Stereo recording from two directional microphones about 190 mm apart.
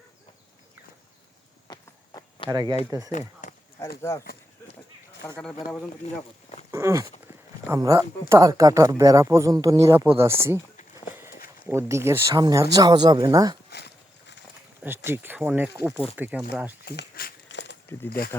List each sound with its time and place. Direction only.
1.6 s walk: 20° left (ahead or behind)
2.5 s speech: 20° right (ahead or behind)
3.1 s speech: 40° left (ahead or behind)
3.8 s speech: 15° left (ahead or behind)
5.2 s speech: centre (ahead or behind)
6.7 s a sound: 15° right (ahead or behind)
7.7 s speech: 20° right (ahead or behind)
11.1 s walk: 10° right (ahead or behind)
11.7 s speech: 15° right (ahead or behind)
13.7 s horse: 60° left (ahead or behind)
14.8 s speech: 10° right (ahead or behind)
16.8 s a sound: 55° left (ahead or behind)